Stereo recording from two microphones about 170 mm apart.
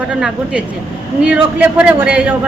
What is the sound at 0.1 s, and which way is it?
A man's voice, 5° right (ahead or behind).